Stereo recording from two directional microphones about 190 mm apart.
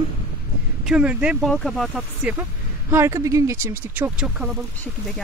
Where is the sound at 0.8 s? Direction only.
5° right (ahead or behind).